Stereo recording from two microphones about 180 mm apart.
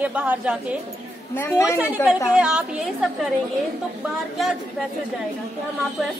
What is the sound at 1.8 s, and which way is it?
A woman's voice, 10° right (ahead or behind).